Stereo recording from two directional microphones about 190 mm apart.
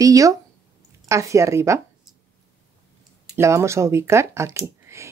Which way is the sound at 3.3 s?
15° right (ahead or behind).